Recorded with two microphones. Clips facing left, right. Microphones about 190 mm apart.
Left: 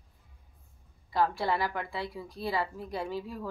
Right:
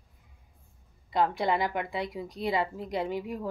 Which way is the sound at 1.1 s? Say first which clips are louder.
Right 2 dB; 20° right (ahead or behind).